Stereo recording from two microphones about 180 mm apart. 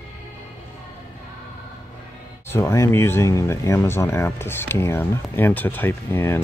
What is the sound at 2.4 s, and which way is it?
Speech, 15° left (ahead or behind).